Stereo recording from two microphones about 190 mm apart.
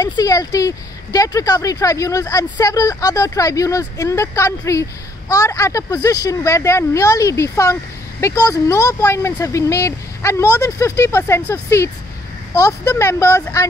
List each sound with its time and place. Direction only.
0.0 s speech: 20° left (ahead or behind)